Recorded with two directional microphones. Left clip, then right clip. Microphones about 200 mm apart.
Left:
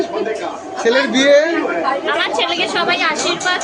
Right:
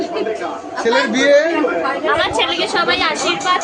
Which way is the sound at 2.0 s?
10° right (ahead or behind).